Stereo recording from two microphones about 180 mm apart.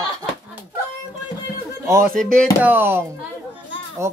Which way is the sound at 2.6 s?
10° right (ahead or behind).